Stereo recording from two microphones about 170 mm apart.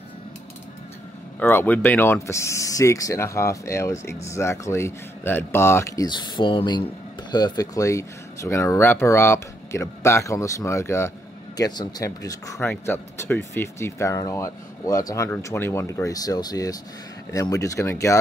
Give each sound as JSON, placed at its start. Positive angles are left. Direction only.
{"t": 1.4, "sound": "speech", "side_deg": 10}